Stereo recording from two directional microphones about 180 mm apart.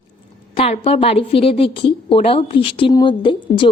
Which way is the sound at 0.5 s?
35° left (ahead or behind).